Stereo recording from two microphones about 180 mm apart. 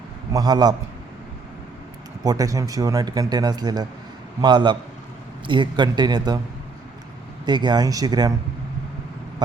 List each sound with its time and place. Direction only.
0.3 s speech: 20° right (ahead or behind)
2.2 s speech: 20° right (ahead or behind)
7.4 s speech: 25° right (ahead or behind)